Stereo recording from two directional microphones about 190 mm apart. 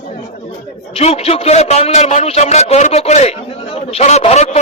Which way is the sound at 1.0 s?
35° left (ahead or behind).